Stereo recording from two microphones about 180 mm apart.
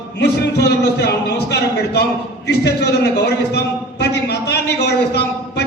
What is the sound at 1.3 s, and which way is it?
A man's voice, 65° left (ahead or behind).